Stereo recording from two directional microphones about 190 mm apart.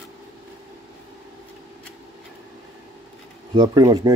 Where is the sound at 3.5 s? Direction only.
20° right (ahead or behind).